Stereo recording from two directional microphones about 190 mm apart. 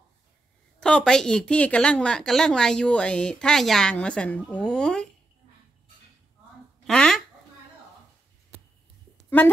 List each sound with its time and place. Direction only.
0.7 s a woman's voice: 5° left (ahead or behind)
6.8 s speech: 5° left (ahead or behind)